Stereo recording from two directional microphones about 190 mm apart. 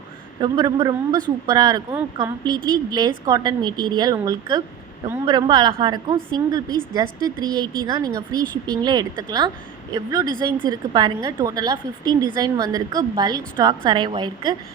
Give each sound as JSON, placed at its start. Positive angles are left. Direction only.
{"t": 0.4, "sound": "a woman's voice", "side_deg": -25}